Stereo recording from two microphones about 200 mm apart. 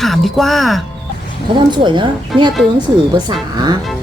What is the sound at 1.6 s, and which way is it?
A woman's voice, 25° right (ahead or behind).